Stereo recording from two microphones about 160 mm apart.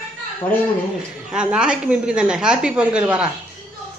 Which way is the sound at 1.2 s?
5° right (ahead or behind).